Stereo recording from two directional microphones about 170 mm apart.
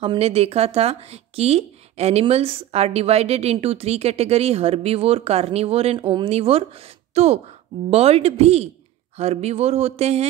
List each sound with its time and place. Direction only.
0.0 s speech: 35° right (ahead or behind)